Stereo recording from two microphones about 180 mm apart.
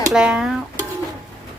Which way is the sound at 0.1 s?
5° right (ahead or behind).